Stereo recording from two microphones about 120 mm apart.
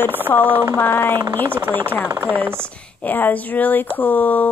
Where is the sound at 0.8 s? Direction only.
15° left (ahead or behind).